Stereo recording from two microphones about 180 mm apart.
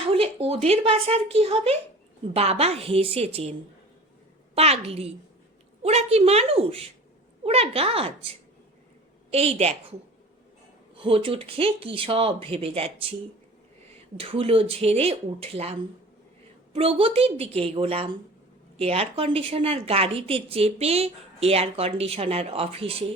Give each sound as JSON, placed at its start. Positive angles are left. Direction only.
{"t": 0.0, "sound": "a woman's voice", "side_deg": -30}
{"t": 4.5, "sound": "a woman's voice", "side_deg": -35}
{"t": 11.0, "sound": "a woman's voice", "side_deg": -30}
{"t": 14.2, "sound": "a woman's voice", "side_deg": -30}